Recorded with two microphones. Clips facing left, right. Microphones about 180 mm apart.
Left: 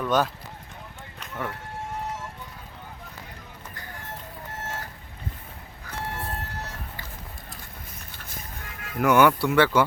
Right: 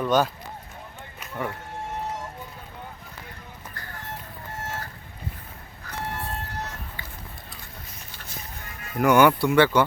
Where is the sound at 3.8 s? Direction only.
20° left (ahead or behind).